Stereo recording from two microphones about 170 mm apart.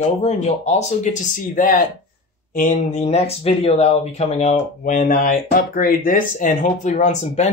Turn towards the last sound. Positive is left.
turn(degrees=45)  # may be behind; listen again after turning